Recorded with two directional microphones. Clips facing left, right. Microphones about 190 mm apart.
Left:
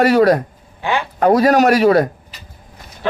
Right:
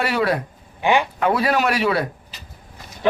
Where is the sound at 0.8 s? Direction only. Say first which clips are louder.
Right 2 dB; 20° right (ahead or behind).